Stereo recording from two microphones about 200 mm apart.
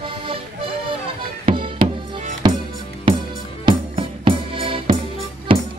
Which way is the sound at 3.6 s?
25° right (ahead or behind).